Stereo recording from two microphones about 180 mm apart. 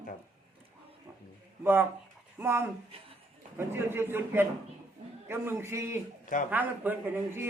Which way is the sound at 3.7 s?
15° right (ahead or behind).